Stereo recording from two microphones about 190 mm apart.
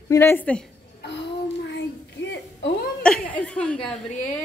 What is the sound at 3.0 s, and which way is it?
Chuckle, 5° left (ahead or behind).